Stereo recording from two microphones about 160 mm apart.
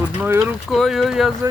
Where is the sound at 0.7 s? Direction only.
Centre (ahead or behind).